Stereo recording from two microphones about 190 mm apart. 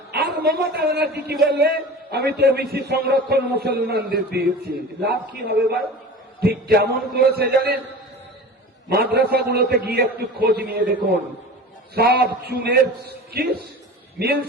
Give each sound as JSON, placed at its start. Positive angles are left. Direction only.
{"t": 0.1, "sound": "a man's voice", "side_deg": -60}
{"t": 8.9, "sound": "a man's voice", "side_deg": -55}